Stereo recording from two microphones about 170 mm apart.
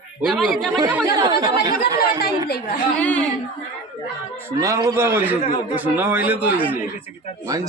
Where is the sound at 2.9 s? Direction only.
5° left (ahead or behind).